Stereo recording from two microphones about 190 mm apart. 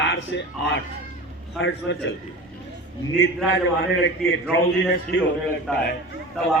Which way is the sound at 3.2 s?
70° left (ahead or behind).